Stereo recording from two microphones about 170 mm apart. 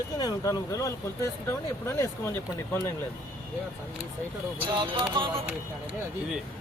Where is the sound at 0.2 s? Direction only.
20° left (ahead or behind).